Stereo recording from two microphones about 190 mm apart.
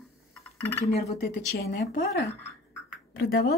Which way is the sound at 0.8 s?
35° left (ahead or behind).